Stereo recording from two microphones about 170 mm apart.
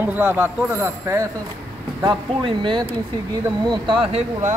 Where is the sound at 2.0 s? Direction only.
30° right (ahead or behind).